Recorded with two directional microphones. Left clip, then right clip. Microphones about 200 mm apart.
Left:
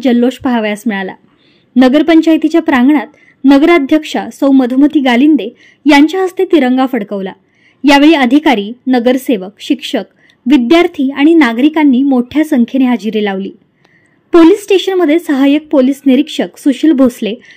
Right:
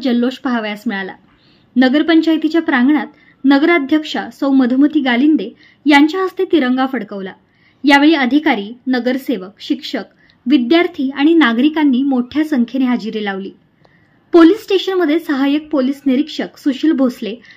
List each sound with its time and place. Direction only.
0.0 s a woman's voice: 40° left (ahead or behind)